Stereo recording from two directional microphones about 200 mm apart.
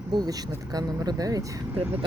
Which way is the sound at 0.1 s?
20° right (ahead or behind).